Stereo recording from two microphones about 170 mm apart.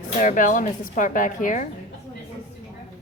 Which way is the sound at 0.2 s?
50° left (ahead or behind).